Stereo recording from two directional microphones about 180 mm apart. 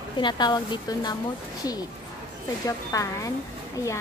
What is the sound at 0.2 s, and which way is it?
Speech, 25° left (ahead or behind).